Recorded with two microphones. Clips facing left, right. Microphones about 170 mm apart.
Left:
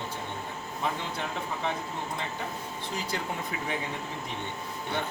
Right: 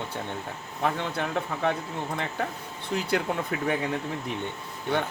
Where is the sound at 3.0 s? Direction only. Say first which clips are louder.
Right 7 dB; 60° right (ahead or behind).